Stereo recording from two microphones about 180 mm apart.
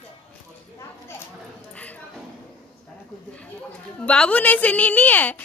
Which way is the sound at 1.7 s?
10° left (ahead or behind).